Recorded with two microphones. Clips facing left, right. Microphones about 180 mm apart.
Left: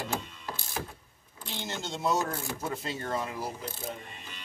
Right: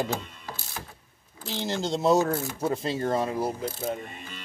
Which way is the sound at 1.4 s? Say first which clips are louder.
Right 8 dB; 35° right (ahead or behind).